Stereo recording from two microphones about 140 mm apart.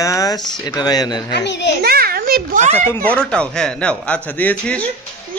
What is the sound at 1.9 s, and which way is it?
Speech, 90° right.